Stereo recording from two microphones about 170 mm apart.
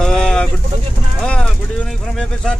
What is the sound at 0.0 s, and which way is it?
Bird, 5° left (ahead or behind).